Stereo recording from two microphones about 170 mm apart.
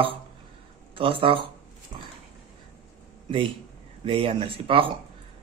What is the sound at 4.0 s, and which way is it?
Speech, 35° right (ahead or behind).